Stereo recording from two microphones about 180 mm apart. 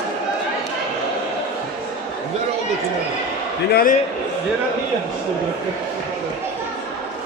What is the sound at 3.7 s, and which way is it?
Speech, 50° left (ahead or behind).